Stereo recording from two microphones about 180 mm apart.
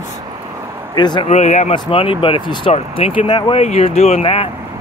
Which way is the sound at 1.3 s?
40° left (ahead or behind).